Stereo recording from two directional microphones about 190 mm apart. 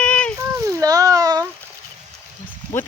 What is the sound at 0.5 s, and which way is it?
Speech, 15° right (ahead or behind).